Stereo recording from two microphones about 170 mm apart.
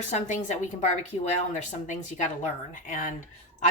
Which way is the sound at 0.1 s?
45° left (ahead or behind).